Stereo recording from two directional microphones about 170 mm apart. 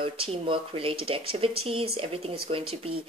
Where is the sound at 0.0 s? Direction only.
30° right (ahead or behind).